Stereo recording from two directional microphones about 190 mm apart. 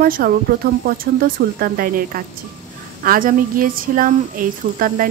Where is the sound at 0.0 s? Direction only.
50° right (ahead or behind).